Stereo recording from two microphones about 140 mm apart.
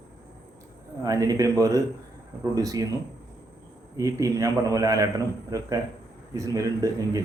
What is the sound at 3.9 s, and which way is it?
A man's voice, 25° right (ahead or behind).